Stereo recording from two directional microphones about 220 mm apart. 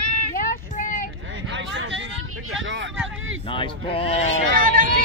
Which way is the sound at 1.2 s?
60° right (ahead or behind).